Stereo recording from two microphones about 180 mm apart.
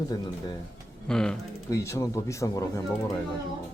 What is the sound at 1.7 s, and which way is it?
Speech, 15° left (ahead or behind).